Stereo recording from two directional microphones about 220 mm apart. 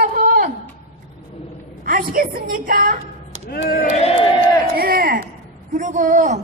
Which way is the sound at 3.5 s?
40° left (ahead or behind).